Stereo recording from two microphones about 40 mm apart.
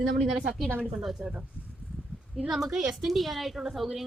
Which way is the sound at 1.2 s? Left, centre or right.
Right.